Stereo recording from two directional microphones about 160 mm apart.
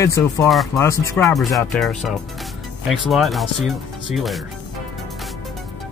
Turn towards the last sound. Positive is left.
turn(degrees=0)  # may be behind; listen again after turning